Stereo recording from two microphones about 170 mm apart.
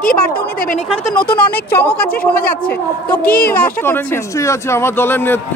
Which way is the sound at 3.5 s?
10° left (ahead or behind).